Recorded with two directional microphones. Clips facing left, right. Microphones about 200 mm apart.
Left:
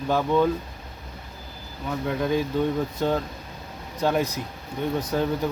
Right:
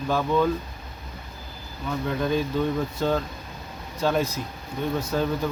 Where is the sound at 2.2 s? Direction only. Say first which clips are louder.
Left 1 dB; 15° left (ahead or behind).